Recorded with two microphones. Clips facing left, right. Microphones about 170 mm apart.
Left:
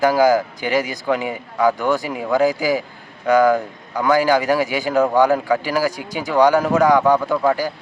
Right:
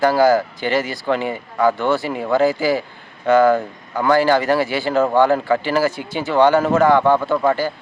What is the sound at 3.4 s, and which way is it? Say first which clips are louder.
Speech: right 1 dB; centre (ahead or behind).